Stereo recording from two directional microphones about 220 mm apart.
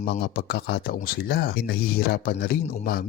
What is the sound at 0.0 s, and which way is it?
Speech, 45° left (ahead or behind).